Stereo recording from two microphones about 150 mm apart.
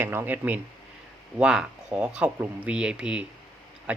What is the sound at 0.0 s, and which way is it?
Speech, 15° right (ahead or behind).